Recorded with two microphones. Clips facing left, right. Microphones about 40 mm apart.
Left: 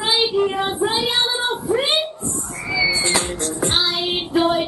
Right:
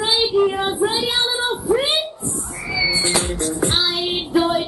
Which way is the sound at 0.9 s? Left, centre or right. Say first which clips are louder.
Left 1 dB; centre.